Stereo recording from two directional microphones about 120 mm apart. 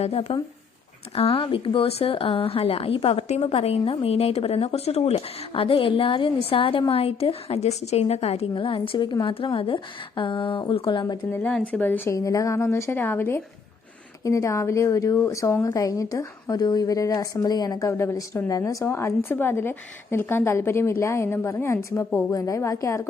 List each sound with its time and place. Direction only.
0.0 s speech: 60° left (ahead or behind)
11.3 s speech: 15° left (ahead or behind)
12.1 s speech: 30° left (ahead or behind)